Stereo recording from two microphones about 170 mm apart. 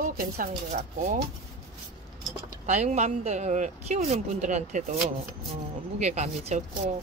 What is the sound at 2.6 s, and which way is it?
Speech, 40° right (ahead or behind).